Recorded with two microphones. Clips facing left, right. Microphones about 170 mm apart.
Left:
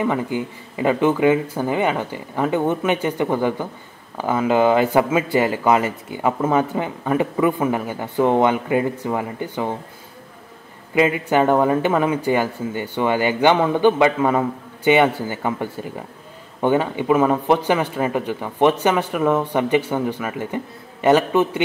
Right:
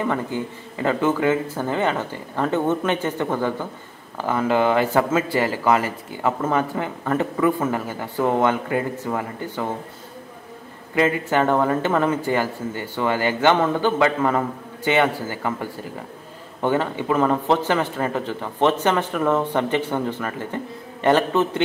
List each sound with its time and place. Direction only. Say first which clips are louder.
0.0 s a man's voice: left 2 dB; 15° left (ahead or behind)
11.0 s a man's voice: left 2 dB; 15° left (ahead or behind)